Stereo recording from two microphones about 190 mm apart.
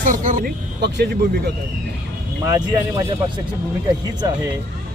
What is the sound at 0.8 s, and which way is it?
Speech, 60° right (ahead or behind).